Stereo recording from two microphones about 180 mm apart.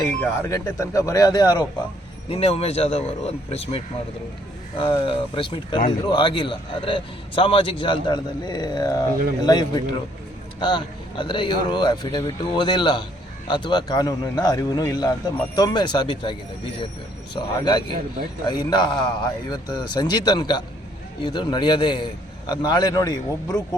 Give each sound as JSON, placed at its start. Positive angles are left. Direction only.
{"t": 0.2, "sound": "speech", "side_deg": 15}
{"t": 2.3, "sound": "speech", "side_deg": 35}
{"t": 4.8, "sound": "a man's voice", "side_deg": 30}
{"t": 17.3, "sound": "a man's voice", "side_deg": 25}